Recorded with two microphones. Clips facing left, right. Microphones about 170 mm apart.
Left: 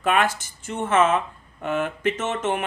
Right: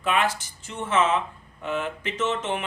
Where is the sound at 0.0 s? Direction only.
50° left (ahead or behind).